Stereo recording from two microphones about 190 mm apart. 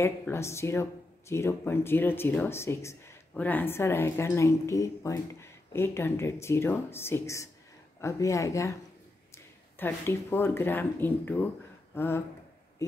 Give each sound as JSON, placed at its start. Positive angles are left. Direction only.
{"t": 0.0, "sound": "speech", "side_deg": 15}
{"t": 9.8, "sound": "speech", "side_deg": 10}
{"t": 11.9, "sound": "a sound", "side_deg": 10}